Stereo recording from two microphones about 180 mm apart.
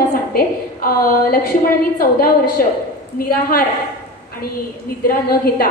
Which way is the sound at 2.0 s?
55° left (ahead or behind).